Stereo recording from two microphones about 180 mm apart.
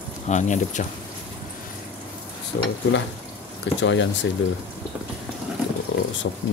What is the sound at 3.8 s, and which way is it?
Speech, 90° left.